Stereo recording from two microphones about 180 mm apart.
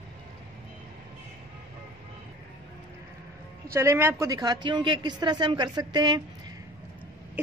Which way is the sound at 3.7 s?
15° right (ahead or behind).